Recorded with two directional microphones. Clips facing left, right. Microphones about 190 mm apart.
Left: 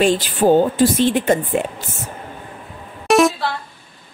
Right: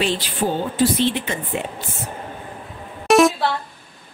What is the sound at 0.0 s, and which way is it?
Speech, 45° left (ahead or behind).